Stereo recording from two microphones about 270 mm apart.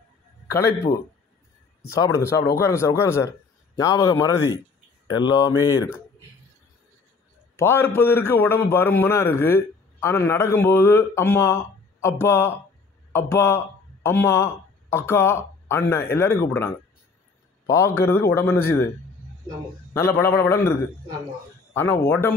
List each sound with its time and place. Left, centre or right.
1.9 s a man's voice: centre
7.5 s a man's voice: centre
19.9 s a man's voice: centre
21.7 s a man's voice: centre